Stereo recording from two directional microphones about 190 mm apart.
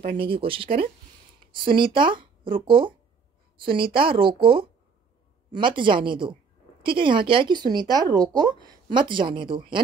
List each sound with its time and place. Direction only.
0.2 s speech: 30° right (ahead or behind)